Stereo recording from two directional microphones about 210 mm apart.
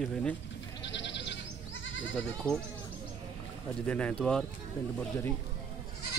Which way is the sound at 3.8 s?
5° left (ahead or behind).